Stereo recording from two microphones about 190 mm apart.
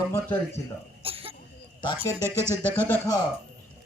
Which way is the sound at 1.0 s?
30° right (ahead or behind).